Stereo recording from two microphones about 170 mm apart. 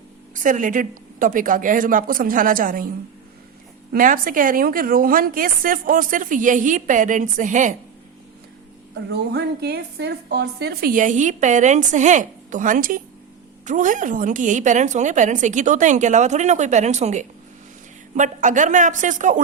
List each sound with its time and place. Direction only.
0.3 s a woman's voice: 50° right (ahead or behind)
3.9 s a woman's voice: 55° right (ahead or behind)
9.0 s a woman's voice: 80° right; by 19.4 s 50° right (ahead or behind)